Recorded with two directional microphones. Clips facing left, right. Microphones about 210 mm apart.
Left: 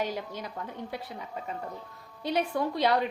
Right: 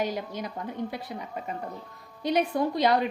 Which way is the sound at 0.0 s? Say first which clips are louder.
Right 3 dB; 15° right (ahead or behind).